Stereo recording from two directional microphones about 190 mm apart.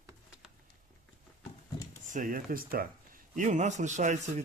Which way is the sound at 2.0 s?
45° right (ahead or behind).